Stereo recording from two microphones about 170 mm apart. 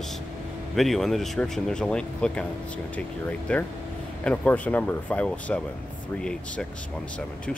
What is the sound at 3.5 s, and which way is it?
Speech, 10° left (ahead or behind).